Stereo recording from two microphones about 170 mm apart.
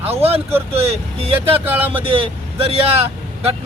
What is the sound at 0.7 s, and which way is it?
Speech, 35° right (ahead or behind).